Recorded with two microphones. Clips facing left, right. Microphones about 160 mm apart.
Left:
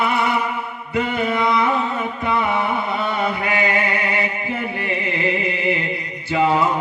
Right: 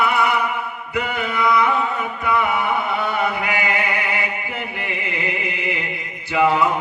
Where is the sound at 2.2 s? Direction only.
25° left (ahead or behind).